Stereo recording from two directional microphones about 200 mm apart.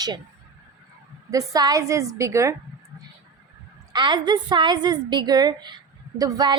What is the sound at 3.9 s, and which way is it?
A woman's voice, 25° right (ahead or behind).